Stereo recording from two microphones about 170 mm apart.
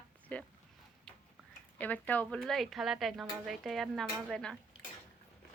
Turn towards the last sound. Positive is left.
turn(degrees=5)  # may be behind; listen again after turning